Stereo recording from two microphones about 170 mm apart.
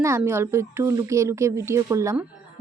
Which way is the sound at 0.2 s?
15° right (ahead or behind).